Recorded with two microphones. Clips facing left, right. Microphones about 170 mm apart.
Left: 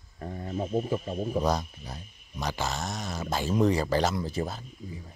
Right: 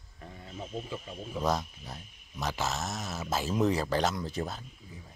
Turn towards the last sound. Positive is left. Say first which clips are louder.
# left 4 dB
turn(degrees=0)  # may be behind; listen again after turning